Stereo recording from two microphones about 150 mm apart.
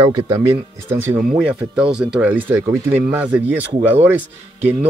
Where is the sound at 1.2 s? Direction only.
5° right (ahead or behind).